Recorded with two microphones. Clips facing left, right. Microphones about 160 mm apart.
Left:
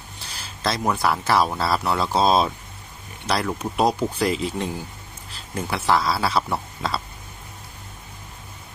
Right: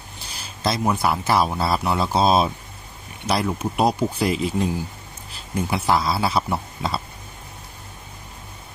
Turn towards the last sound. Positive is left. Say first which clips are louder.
# right 1 dB
turn(degrees=-15)  # may be behind; listen again after turning